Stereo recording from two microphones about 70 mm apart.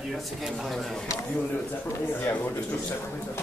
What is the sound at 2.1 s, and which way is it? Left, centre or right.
Speech, left.